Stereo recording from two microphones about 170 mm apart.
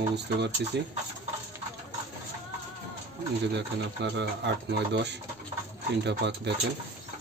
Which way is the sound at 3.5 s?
90° right.